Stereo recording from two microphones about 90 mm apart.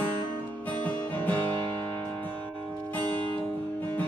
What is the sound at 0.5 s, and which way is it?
Music, 20° left (ahead or behind).